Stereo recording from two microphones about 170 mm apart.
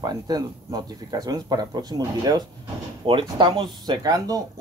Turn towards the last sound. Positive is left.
turn(degrees=-20)  # may be behind; listen again after turning